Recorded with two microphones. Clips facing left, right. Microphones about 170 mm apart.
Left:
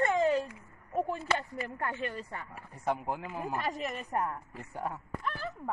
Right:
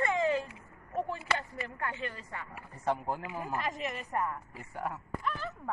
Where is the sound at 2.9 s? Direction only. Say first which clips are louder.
Even; 15° left (ahead or behind).